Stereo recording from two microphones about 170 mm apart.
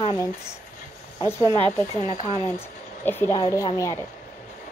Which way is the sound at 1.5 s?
25° right (ahead or behind).